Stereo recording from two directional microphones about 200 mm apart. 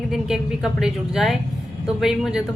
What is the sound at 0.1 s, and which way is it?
Speech, centre (ahead or behind).